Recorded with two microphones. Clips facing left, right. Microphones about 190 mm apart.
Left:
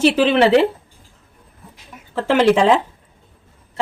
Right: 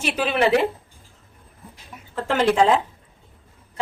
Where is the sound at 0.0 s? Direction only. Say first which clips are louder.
Left 7 dB; 90° left.